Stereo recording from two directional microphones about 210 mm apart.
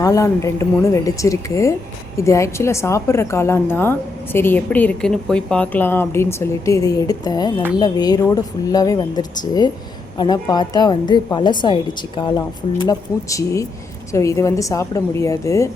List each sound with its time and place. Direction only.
0.0 s a woman's voice: 15° left (ahead or behind)